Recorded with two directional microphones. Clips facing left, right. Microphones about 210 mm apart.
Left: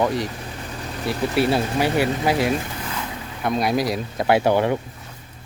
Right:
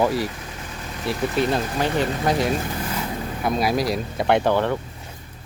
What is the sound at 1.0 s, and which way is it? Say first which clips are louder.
Speech: left 2 dB; 5° left (ahead or behind).